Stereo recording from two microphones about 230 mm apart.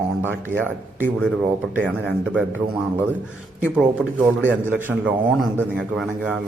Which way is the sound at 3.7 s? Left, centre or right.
Centre.